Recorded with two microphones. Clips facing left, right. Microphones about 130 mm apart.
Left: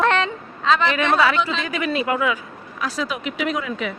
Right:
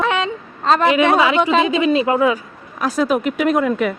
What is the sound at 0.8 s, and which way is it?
Speech, 15° right (ahead or behind).